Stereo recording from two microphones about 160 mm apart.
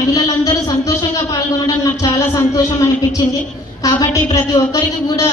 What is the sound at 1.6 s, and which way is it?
Speech, 20° left (ahead or behind).